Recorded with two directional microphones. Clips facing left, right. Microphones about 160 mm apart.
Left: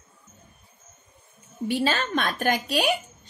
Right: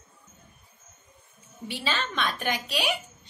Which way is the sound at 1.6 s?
45° left (ahead or behind).